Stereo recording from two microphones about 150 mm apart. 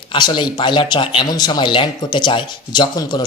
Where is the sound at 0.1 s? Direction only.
30° left (ahead or behind).